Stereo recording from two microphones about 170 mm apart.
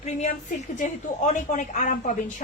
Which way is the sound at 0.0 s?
40° left (ahead or behind).